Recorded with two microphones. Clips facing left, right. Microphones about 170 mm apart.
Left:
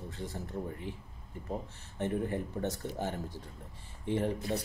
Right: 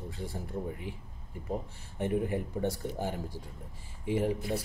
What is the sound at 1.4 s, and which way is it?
Speech, 10° right (ahead or behind).